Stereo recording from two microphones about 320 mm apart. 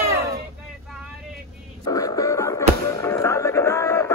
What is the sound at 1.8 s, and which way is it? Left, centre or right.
Music, centre.